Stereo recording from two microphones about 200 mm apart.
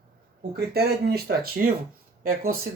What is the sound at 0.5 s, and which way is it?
Speech, 50° right (ahead or behind).